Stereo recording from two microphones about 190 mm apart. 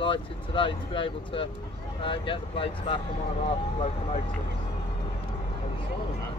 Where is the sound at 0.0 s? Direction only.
25° left (ahead or behind).